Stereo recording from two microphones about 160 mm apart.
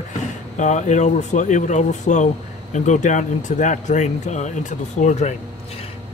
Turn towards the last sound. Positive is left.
turn(degrees=45)  # may be behind; listen again after turning